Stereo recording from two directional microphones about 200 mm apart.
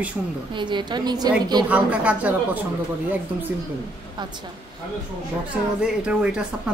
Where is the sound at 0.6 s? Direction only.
20° right (ahead or behind).